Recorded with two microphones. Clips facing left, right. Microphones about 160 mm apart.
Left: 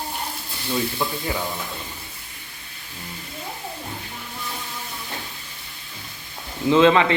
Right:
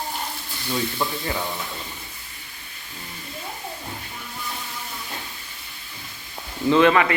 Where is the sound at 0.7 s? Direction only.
5° left (ahead or behind).